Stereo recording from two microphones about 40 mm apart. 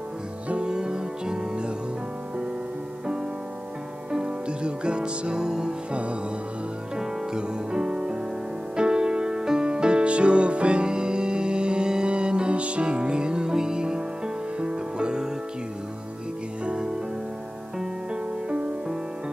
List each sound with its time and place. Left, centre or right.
0.5 s music: right
4.1 s music: right
7.0 s music: right
16.6 s music: right
18.1 s music: right